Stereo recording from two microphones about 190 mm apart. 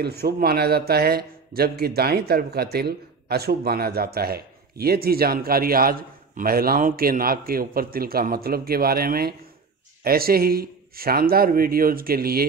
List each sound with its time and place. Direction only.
0.0 s a man's voice: 55° right (ahead or behind)